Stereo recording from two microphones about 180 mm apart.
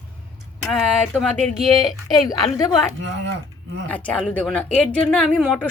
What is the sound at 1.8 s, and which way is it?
Speech, 20° left (ahead or behind).